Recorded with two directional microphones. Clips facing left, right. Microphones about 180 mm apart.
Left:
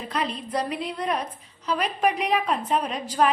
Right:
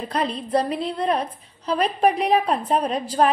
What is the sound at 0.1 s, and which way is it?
A woman's voice, 35° right (ahead or behind).